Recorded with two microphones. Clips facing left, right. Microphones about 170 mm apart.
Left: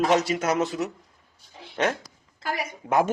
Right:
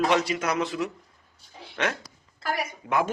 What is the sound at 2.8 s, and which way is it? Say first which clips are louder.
Speech: left 4 dB; 40° left (ahead or behind).